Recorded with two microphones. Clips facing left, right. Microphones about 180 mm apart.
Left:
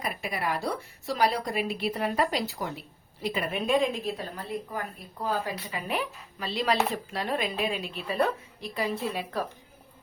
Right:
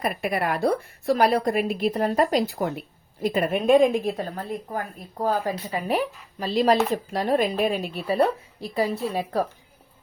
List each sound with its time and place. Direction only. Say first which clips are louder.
0.0 s a woman's voice: right 6 dB; 55° right (ahead or behind); by 9.4 s 35° right (ahead or behind)